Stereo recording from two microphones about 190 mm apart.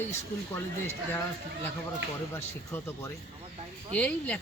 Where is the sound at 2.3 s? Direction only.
15° left (ahead or behind).